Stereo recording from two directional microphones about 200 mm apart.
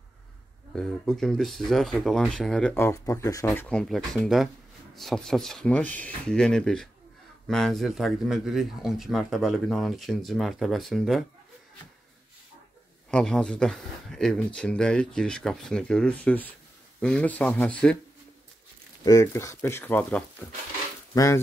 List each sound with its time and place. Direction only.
0.7 s speech: centre (ahead or behind)
13.1 s speech: 5° left (ahead or behind)
19.0 s speech: 15° left (ahead or behind)